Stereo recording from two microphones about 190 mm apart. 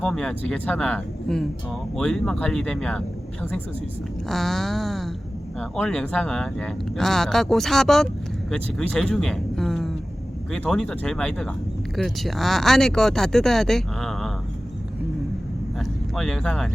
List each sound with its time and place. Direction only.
0.0 s speech: 5° left (ahead or behind)
4.3 s speech: centre (ahead or behind)
15.8 s speech: 5° left (ahead or behind)